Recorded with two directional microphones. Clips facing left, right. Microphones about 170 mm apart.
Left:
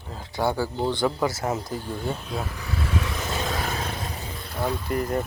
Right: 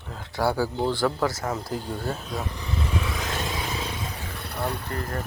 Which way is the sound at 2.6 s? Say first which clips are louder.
Even; 15° right (ahead or behind).